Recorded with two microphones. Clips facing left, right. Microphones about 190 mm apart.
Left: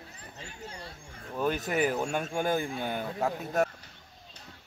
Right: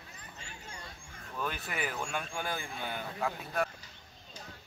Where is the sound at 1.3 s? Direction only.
40° left (ahead or behind).